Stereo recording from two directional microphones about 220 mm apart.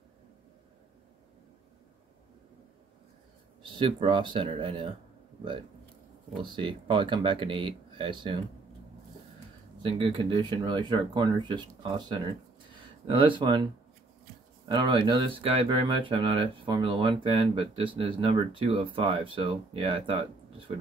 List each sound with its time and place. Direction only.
3.6 s speech: 20° right (ahead or behind)
6.4 s speech: 20° right (ahead or behind)
9.8 s speech: 25° right (ahead or behind)
13.0 s speech: 20° right (ahead or behind)
14.7 s speech: 20° right (ahead or behind)